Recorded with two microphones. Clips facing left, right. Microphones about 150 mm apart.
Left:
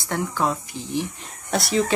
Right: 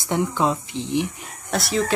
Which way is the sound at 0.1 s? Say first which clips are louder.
Right 3 dB; 20° right (ahead or behind).